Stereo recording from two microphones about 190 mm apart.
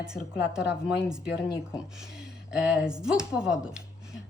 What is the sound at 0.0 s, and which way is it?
A woman's voice, 5° right (ahead or behind).